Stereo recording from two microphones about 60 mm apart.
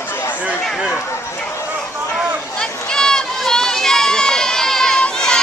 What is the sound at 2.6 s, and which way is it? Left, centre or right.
Run, centre.